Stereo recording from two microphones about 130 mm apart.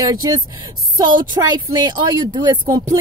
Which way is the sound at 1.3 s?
30° right (ahead or behind).